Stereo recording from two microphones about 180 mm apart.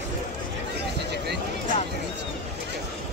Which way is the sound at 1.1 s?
65° right (ahead or behind).